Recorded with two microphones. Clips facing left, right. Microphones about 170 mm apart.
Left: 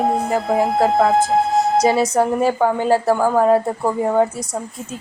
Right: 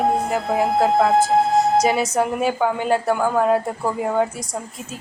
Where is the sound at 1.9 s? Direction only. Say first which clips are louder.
Left 4 dB; 30° left (ahead or behind).